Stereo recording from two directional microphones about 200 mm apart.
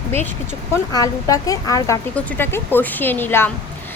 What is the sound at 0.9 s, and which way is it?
A woman's voice, 20° left (ahead or behind).